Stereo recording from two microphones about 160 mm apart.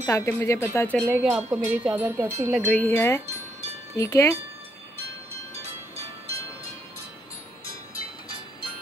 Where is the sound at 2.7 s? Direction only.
10° left (ahead or behind).